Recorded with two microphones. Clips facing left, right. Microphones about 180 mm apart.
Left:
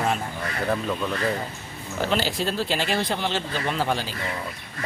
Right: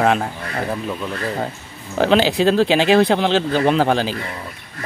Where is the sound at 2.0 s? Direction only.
75° right (ahead or behind).